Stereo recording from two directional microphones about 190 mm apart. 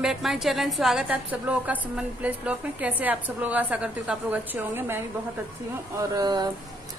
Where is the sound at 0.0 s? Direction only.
Centre (ahead or behind).